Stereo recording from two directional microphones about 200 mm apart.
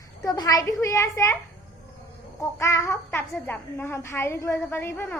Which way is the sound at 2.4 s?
15° left (ahead or behind).